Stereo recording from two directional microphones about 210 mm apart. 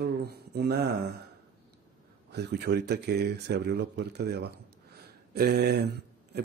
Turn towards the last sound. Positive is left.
turn(degrees=-50)  # may be behind; listen again after turning